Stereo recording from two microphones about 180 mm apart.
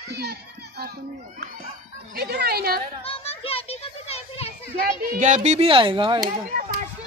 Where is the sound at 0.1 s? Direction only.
65° right (ahead or behind).